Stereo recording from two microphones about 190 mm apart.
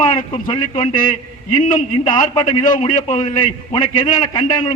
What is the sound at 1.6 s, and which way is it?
Speech, 45° left (ahead or behind).